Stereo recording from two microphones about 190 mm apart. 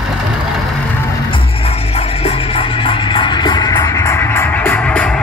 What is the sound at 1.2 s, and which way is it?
Music, 30° left (ahead or behind).